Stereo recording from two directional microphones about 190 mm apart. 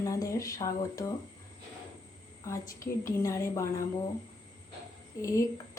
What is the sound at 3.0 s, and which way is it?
Speech, 15° left (ahead or behind).